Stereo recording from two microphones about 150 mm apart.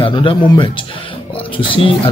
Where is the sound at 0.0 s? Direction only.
35° left (ahead or behind).